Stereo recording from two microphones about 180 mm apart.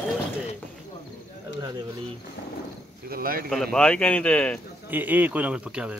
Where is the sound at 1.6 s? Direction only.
20° right (ahead or behind).